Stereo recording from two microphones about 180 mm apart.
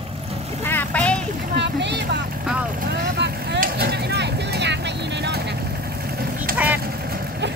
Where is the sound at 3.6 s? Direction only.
60° right (ahead or behind).